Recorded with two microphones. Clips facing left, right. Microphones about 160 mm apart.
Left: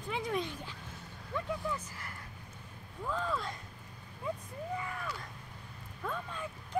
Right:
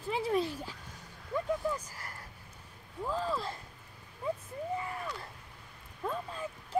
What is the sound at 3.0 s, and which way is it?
Speech, 30° right (ahead or behind).